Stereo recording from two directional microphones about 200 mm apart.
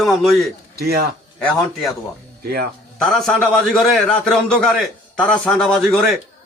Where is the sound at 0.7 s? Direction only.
50° right (ahead or behind).